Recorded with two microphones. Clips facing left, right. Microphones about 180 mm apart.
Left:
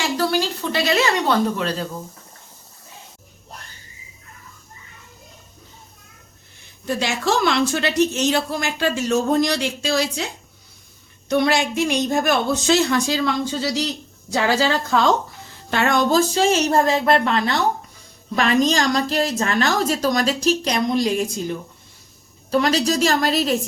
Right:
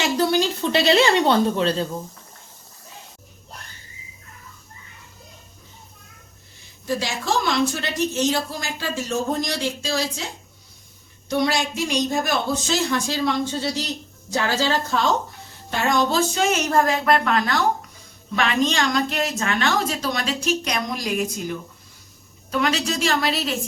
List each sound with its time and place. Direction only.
0.2 s speech: 20° right (ahead or behind)
6.8 s a woman's voice: 70° left (ahead or behind)
11.3 s a woman's voice: 60° left (ahead or behind); by 14.9 s 90° left
15.7 s a woman's voice: 70° left (ahead or behind)
16.3 s a woman's voice: 30° left (ahead or behind)
18.3 s a woman's voice: 40° left (ahead or behind)
22.5 s a woman's voice: 35° left (ahead or behind)